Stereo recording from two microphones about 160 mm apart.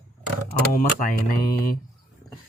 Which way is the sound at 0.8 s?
60° left (ahead or behind).